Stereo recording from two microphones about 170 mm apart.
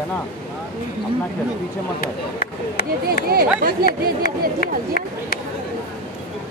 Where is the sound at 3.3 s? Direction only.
60° right (ahead or behind).